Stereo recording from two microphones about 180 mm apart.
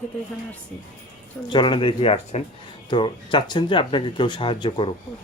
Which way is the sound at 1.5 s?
25° left (ahead or behind).